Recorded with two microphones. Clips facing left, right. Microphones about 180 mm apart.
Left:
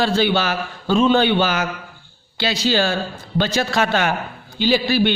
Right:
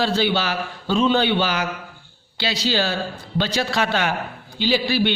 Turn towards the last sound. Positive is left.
turn(degrees=50)  # may be behind; listen again after turning